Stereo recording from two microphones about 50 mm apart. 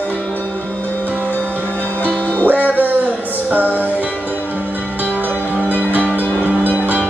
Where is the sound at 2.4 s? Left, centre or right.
Right.